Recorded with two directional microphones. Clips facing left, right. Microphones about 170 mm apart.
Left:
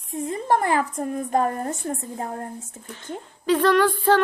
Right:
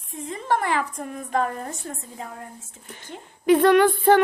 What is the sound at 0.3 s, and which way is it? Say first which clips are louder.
A woman's voice: left 2 dB; 45° left (ahead or behind).